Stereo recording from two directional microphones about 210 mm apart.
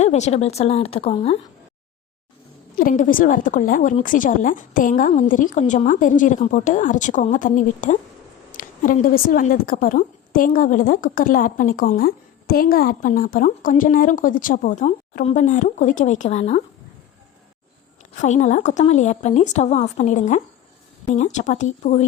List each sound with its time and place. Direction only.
0.0 s speech: 30° left (ahead or behind)
2.7 s a woman's voice: 40° left (ahead or behind)
18.2 s a woman's voice: 35° left (ahead or behind)